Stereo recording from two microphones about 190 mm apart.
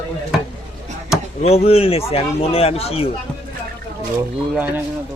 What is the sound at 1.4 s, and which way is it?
Speech, 35° left (ahead or behind).